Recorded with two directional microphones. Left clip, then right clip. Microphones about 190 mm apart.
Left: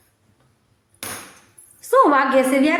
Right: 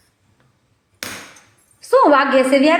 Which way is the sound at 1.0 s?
50° right (ahead or behind).